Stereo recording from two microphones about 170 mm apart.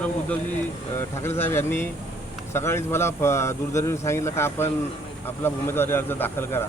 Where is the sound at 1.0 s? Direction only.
15° left (ahead or behind).